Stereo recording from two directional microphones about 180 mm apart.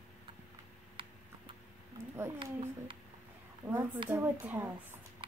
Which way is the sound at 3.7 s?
15° right (ahead or behind).